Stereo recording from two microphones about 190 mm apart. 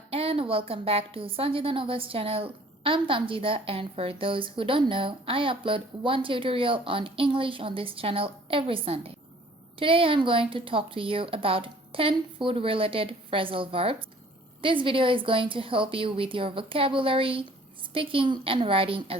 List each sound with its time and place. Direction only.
0.1 s a woman's voice: 30° right (ahead or behind)